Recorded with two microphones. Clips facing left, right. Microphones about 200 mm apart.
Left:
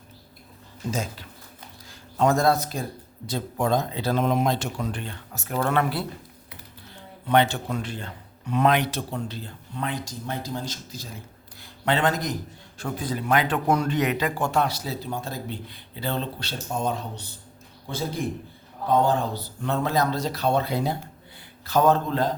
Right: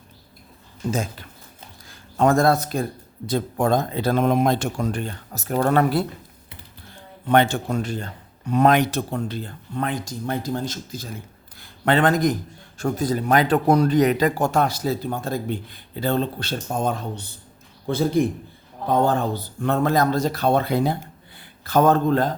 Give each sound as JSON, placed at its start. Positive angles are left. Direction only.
{"t": 0.9, "sound": "a man's voice", "side_deg": -55}
{"t": 7.3, "sound": "a man's voice", "side_deg": -50}
{"t": 19.0, "sound": "a man's voice", "side_deg": -55}